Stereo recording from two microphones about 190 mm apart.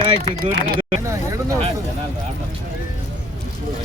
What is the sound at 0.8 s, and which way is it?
Speech, 20° right (ahead or behind).